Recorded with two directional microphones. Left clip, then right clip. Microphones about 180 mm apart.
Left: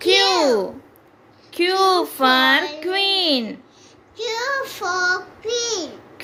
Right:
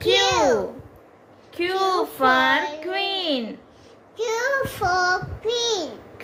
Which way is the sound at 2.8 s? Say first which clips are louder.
Left 6 dB; 40° left (ahead or behind).